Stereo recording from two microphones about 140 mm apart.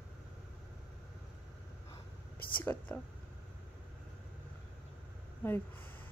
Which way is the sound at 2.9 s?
15° left (ahead or behind).